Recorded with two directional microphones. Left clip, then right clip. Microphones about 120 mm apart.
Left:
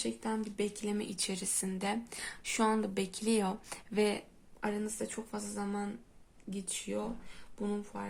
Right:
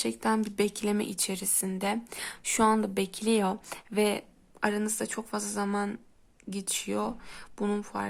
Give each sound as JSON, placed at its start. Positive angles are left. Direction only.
{"t": 0.0, "sound": "speech", "side_deg": -45}
{"t": 4.8, "sound": "speech", "side_deg": -50}
{"t": 7.6, "sound": "speech", "side_deg": -60}